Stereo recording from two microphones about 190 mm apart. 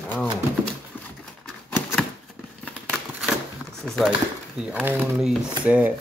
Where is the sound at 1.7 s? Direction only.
5° left (ahead or behind).